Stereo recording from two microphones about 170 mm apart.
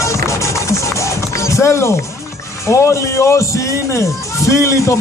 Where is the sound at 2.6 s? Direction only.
15° left (ahead or behind).